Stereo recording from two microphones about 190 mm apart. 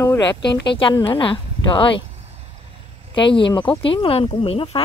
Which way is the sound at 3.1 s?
25° left (ahead or behind).